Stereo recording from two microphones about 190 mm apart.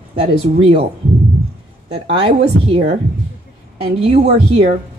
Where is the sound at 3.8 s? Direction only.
30° right (ahead or behind).